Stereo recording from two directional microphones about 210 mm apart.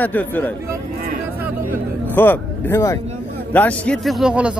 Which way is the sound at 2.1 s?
10° left (ahead or behind).